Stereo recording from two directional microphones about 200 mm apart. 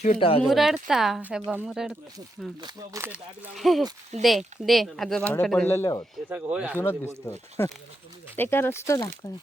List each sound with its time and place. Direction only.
0.0 s speech: 30° left (ahead or behind)
0.4 s speech: centre (ahead or behind)
2.6 s speech: 20° right (ahead or behind)
3.5 s speech: centre (ahead or behind)
6.2 s speech: 5° right (ahead or behind)
6.7 s speech: 10° left (ahead or behind)